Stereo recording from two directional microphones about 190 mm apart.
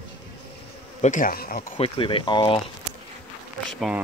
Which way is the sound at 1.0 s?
45° left (ahead or behind).